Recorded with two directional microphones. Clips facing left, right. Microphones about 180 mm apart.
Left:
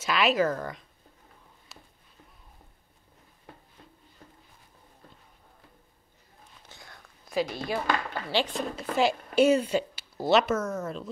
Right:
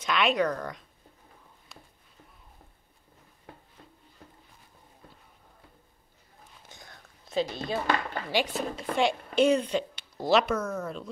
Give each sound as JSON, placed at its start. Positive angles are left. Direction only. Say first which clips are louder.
{"t": 0.0, "sound": "speech", "louder": "left 1 dB", "side_deg": 5}
{"t": 1.7, "sound": "a sound", "louder": "right 1 dB", "side_deg": 0}
{"t": 6.7, "sound": "speech", "louder": "left 1 dB", "side_deg": -20}